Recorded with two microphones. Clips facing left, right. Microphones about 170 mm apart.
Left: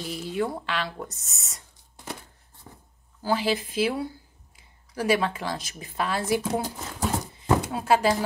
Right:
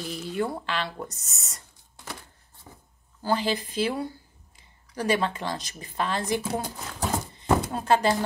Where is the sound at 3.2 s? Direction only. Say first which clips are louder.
Left 1 dB; 5° left (ahead or behind).